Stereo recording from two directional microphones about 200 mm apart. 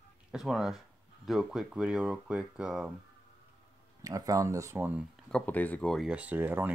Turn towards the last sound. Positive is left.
turn(degrees=-10)  # may be behind; listen again after turning